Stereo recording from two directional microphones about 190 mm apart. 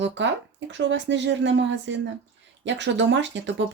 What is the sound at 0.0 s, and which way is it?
Speech, 70° right (ahead or behind).